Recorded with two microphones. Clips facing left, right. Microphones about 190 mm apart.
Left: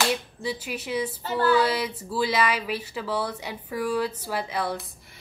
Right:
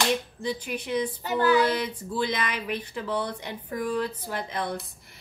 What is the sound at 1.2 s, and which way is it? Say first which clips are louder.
Female singing: even; 15° right (ahead or behind).